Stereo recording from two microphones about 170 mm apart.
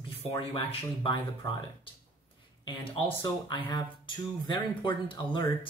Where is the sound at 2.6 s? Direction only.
25° left (ahead or behind).